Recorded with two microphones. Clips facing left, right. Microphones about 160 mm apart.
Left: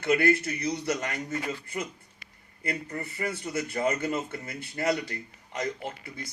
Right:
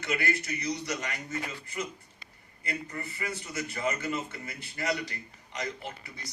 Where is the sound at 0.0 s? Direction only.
55° left (ahead or behind).